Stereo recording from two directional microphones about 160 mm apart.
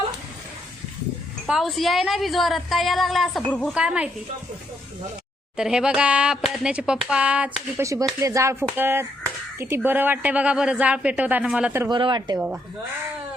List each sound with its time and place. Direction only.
1.5 s a woman's voice: centre (ahead or behind)
3.8 s a woman's voice: 5° right (ahead or behind)
5.5 s a woman's voice: 5° right (ahead or behind)
7.9 s a woman's voice: 20° right (ahead or behind)
11.9 s speech: 30° right (ahead or behind)